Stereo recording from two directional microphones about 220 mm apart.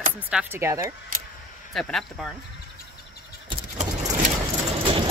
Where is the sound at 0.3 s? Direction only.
5° right (ahead or behind).